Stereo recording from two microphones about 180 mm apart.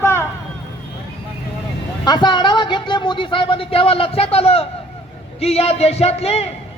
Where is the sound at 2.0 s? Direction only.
25° left (ahead or behind).